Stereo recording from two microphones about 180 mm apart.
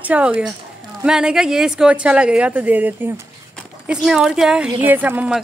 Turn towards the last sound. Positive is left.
turn(degrees=-5)  # may be behind; listen again after turning